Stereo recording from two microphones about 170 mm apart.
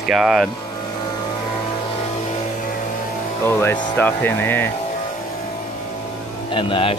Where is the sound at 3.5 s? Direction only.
15° left (ahead or behind).